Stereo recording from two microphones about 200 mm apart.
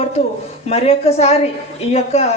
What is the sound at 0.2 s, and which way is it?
A woman's voice, 30° left (ahead or behind).